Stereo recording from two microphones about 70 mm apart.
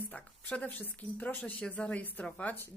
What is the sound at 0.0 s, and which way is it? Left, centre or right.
A woman's voice, left.